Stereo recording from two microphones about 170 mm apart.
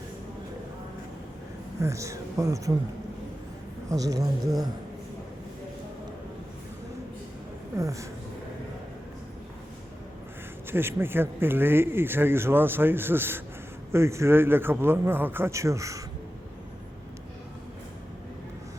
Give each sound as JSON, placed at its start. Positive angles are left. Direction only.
{"t": 1.8, "sound": "speech", "side_deg": -20}
{"t": 3.8, "sound": "speech", "side_deg": -20}
{"t": 7.8, "sound": "speech", "side_deg": -20}
{"t": 10.7, "sound": "speech", "side_deg": -15}